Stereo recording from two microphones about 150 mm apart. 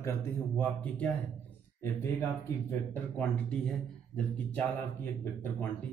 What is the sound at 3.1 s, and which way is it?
Speech, 5° left (ahead or behind).